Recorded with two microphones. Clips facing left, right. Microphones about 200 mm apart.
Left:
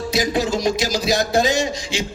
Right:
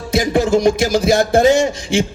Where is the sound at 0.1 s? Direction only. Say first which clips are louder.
Right 7 dB; 55° right (ahead or behind).